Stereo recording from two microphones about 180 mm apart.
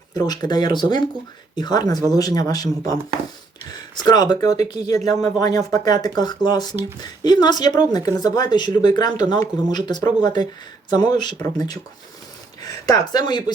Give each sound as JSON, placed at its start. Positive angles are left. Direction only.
{"t": 0.1, "sound": "speech", "side_deg": 20}
{"t": 4.4, "sound": "speech", "side_deg": -40}
{"t": 4.9, "sound": "speech", "side_deg": 20}
{"t": 12.8, "sound": "speech", "side_deg": 20}